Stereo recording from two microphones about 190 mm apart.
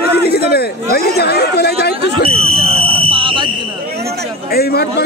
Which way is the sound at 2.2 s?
30° right (ahead or behind).